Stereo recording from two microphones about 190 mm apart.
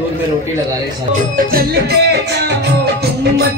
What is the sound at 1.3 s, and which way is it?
Music, 55° right (ahead or behind).